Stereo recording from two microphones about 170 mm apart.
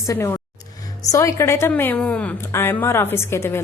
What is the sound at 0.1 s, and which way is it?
A woman's voice, 15° left (ahead or behind).